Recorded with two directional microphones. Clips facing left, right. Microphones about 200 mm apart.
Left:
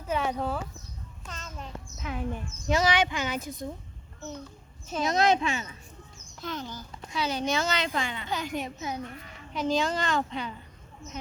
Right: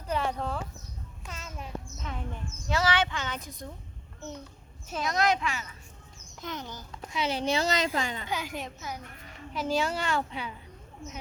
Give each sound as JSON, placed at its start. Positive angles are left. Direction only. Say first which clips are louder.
{"t": 0.0, "sound": "speech", "louder": "left 2 dB", "side_deg": 5}
{"t": 1.3, "sound": "a woman's voice", "louder": "even", "side_deg": -10}
{"t": 2.0, "sound": "speech", "louder": "left 10 dB", "side_deg": 5}
{"t": 2.6, "sound": "speech", "louder": "left 3 dB", "side_deg": 15}
{"t": 5.0, "sound": "speech", "louder": "left 3 dB", "side_deg": 25}
{"t": 6.4, "sound": "a woman's voice", "louder": "left 2 dB", "side_deg": -20}
{"t": 8.3, "sound": "a woman's voice", "louder": "left 3 dB", "side_deg": -5}